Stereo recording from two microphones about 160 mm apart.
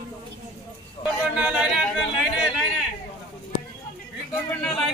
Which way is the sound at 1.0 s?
35° left (ahead or behind).